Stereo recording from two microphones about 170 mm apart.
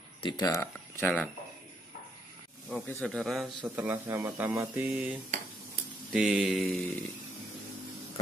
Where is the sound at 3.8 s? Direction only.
15° right (ahead or behind).